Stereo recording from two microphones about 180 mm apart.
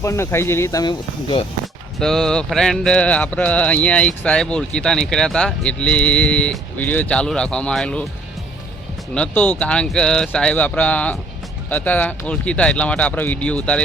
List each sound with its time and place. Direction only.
0.0 s speech: 15° left (ahead or behind)
2.0 s a sound: 5° left (ahead or behind)
9.1 s speech: 5° left (ahead or behind)